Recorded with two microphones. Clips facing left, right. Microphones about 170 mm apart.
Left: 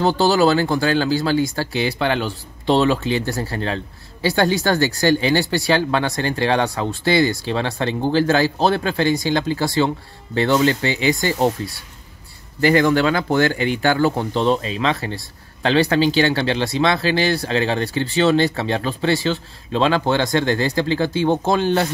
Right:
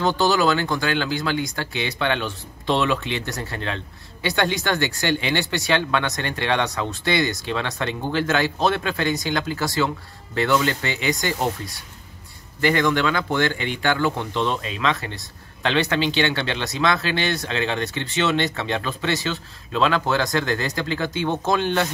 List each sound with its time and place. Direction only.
0.0 s speech: 35° left (ahead or behind)
12.5 s speech: 35° left (ahead or behind)